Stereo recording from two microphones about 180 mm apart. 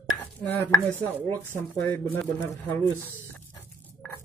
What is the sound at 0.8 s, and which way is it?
A man's voice, 10° left (ahead or behind).